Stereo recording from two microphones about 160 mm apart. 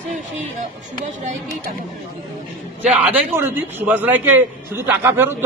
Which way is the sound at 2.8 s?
10° right (ahead or behind).